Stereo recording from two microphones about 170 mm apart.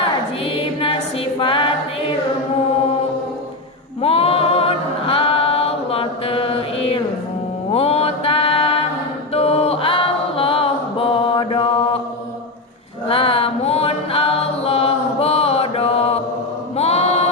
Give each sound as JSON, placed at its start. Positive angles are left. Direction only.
{"t": 0.4, "sound": "music", "side_deg": 35}
{"t": 4.0, "sound": "a capella", "side_deg": 35}
{"t": 7.7, "sound": "mantra", "side_deg": 35}
{"t": 9.3, "sound": "a capella", "side_deg": 35}
{"t": 13.1, "sound": "a capella", "side_deg": 35}
{"t": 16.7, "sound": "music", "side_deg": 40}